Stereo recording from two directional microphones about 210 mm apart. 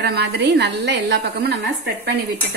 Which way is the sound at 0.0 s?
50° right (ahead or behind).